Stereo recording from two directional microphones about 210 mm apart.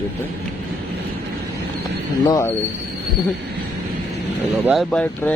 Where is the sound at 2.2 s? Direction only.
15° left (ahead or behind).